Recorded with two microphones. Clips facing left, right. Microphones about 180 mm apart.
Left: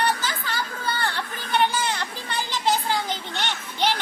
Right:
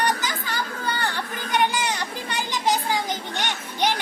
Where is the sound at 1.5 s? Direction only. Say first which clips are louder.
Even; 15° right (ahead or behind).